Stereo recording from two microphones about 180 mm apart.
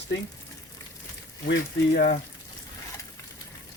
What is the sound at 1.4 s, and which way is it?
Speech, 55° left (ahead or behind).